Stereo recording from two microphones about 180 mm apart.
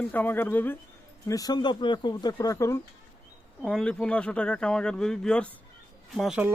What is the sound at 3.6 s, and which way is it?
Speech, 5° left (ahead or behind).